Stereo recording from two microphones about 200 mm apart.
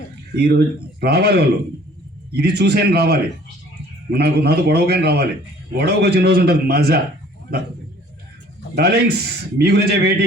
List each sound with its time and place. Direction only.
0.3 s a man's voice: 55° right (ahead or behind)
8.7 s speech: 50° right (ahead or behind)